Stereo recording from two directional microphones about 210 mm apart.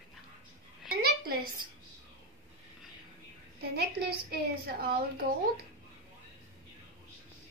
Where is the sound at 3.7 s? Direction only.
50° right (ahead or behind).